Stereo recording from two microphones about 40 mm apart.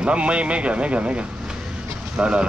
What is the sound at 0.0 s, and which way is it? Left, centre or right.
Speech, right.